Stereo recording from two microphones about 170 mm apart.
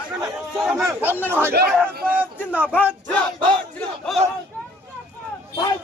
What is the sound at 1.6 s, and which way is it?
Speech, 70° right (ahead or behind).